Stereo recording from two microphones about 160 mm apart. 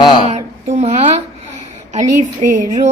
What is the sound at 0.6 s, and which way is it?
Speech, 45° right (ahead or behind).